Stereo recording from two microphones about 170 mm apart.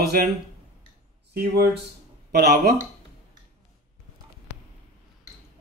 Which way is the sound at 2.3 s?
70° right (ahead or behind).